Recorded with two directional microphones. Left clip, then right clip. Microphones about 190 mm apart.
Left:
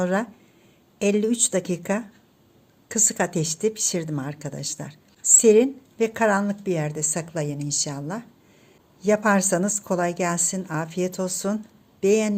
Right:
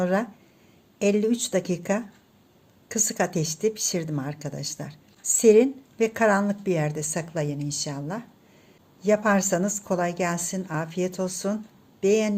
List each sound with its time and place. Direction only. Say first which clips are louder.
0.0 s a woman's voice: left 1 dB; 10° left (ahead or behind)